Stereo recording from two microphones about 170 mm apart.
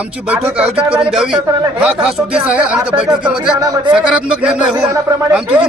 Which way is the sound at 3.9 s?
5° right (ahead or behind).